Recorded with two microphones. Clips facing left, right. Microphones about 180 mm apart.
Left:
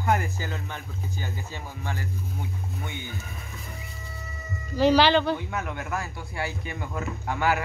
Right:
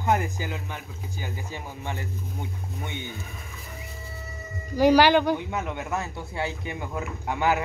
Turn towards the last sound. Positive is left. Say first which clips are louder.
# right 1 dB
turn(degrees=-20)  # may be behind; listen again after turning